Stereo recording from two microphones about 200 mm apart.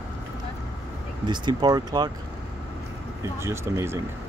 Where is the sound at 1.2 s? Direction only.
20° right (ahead or behind).